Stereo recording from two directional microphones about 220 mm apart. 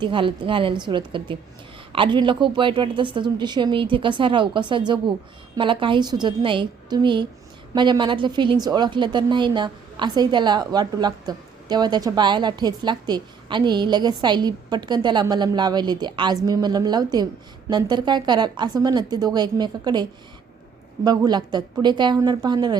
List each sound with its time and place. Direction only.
0.0 s a woman's voice: 20° right (ahead or behind)